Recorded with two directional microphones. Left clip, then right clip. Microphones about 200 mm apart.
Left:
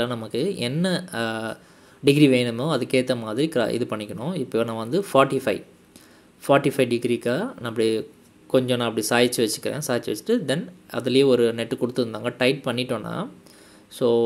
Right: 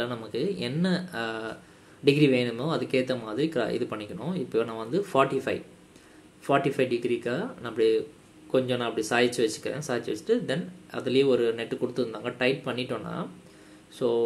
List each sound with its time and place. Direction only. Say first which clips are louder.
0.0 s speech: left 5 dB; 40° left (ahead or behind)